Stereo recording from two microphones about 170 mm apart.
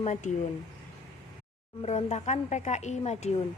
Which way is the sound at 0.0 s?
45° left (ahead or behind).